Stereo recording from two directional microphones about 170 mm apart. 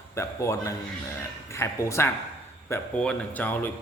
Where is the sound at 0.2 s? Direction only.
15° left (ahead or behind).